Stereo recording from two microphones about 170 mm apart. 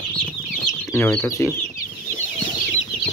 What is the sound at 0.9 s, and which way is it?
Speech, 10° left (ahead or behind).